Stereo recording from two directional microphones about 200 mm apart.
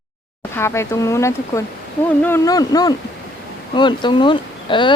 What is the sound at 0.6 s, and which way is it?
Speech, 15° left (ahead or behind).